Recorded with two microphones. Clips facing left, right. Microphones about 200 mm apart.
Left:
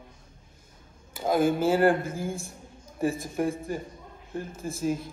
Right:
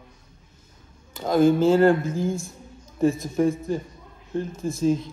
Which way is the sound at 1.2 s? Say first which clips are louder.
Right 5 dB; 10° left (ahead or behind).